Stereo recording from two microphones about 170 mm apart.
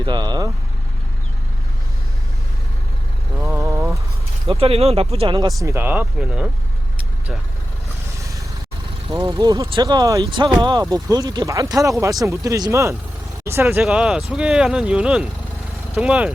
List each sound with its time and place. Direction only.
0.0 s speech: 25° right (ahead or behind)
3.6 s a sound: 15° right (ahead or behind)
4.4 s speech: 35° right (ahead or behind)
5.6 s speech: 15° right (ahead or behind)
8.2 s vehicle: 20° right (ahead or behind)
9.0 s speech: 20° right (ahead or behind); by 16.3 s 5° right (ahead or behind)